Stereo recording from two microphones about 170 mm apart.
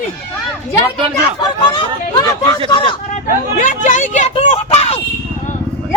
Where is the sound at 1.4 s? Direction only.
25° left (ahead or behind).